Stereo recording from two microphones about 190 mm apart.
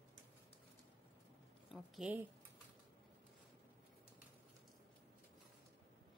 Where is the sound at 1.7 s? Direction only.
5° right (ahead or behind).